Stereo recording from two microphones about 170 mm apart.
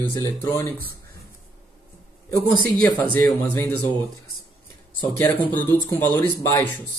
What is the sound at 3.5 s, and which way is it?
Speech, 15° left (ahead or behind).